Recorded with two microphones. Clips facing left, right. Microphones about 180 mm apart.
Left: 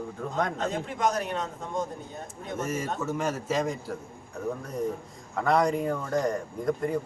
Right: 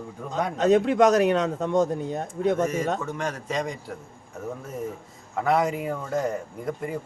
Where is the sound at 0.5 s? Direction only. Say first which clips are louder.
Right 12 dB; 75° right (ahead or behind).